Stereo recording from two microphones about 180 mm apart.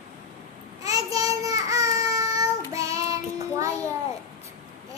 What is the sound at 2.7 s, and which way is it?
Child singing, 20° right (ahead or behind).